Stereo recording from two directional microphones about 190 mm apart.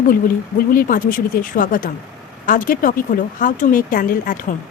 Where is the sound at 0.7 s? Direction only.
45° left (ahead or behind).